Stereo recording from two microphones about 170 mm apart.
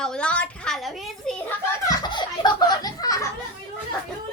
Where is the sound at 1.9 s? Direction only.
25° left (ahead or behind).